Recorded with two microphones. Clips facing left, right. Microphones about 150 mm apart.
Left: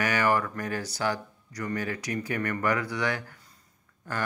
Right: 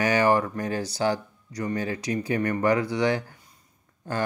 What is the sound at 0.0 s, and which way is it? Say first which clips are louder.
Speech: right 4 dB; 25° right (ahead or behind).